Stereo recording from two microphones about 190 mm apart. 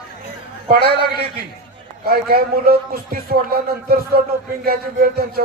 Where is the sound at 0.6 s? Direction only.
50° right (ahead or behind).